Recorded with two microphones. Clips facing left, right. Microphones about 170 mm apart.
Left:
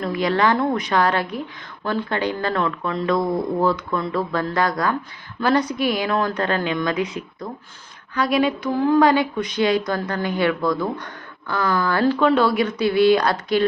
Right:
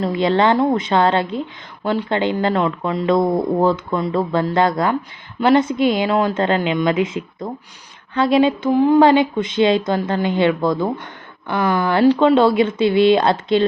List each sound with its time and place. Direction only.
0.0 s a woman's voice: 25° right (ahead or behind)